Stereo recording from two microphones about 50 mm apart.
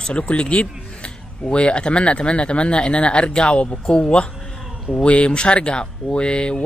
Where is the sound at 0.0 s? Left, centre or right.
Left.